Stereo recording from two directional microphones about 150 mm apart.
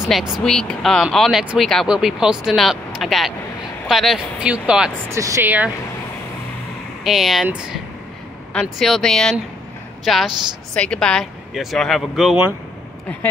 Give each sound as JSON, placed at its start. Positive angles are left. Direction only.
{"t": 0.1, "sound": "speech", "side_deg": 0}
{"t": 5.1, "sound": "speech", "side_deg": -20}
{"t": 7.1, "sound": "speech", "side_deg": 0}
{"t": 8.5, "sound": "speech", "side_deg": 0}